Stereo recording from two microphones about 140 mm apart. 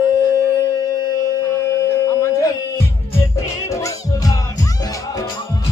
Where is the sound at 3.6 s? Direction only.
20° left (ahead or behind).